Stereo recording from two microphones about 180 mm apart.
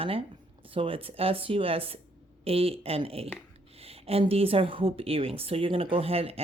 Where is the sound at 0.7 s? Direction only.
30° right (ahead or behind).